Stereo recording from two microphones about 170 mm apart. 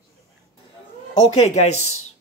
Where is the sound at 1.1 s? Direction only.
40° left (ahead or behind).